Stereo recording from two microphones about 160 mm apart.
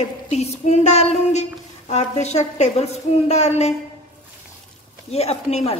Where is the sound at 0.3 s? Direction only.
45° left (ahead or behind).